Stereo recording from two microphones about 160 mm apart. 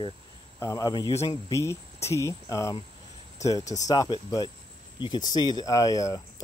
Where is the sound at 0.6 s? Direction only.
20° left (ahead or behind).